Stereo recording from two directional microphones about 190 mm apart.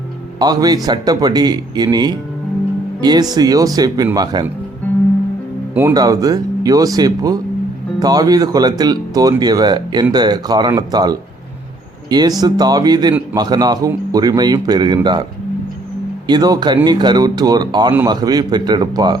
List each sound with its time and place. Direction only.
0.3 s speech: 20° right (ahead or behind)
5.7 s speech: 15° right (ahead or behind)
12.4 s speech: 20° right (ahead or behind)
16.2 s speech: 20° right (ahead or behind)